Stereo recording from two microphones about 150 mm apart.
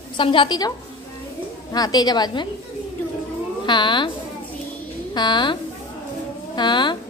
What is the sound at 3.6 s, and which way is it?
Speech, 30° left (ahead or behind).